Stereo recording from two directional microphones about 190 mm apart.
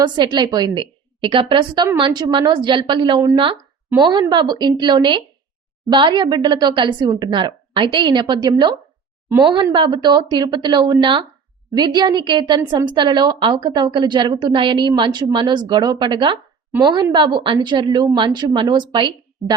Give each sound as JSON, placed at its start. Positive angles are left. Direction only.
{"t": 0.0, "sound": "a woman's voice", "side_deg": -25}